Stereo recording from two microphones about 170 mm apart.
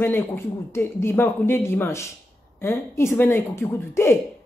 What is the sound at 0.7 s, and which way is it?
A woman's voice, 15° left (ahead or behind).